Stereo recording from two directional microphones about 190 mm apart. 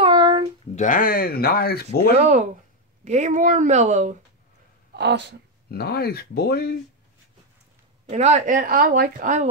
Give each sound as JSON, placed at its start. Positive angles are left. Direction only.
{"t": 0.0, "sound": "a sound", "side_deg": -25}
{"t": 0.7, "sound": "speech", "side_deg": 45}
{"t": 2.1, "sound": "speech", "side_deg": -35}
{"t": 4.9, "sound": "speech", "side_deg": -65}
{"t": 5.7, "sound": "speech", "side_deg": 55}
{"t": 8.1, "sound": "a woman's voice", "side_deg": -35}